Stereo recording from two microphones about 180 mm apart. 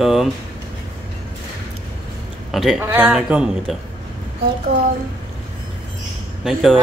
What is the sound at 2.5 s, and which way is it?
Speech, centre (ahead or behind).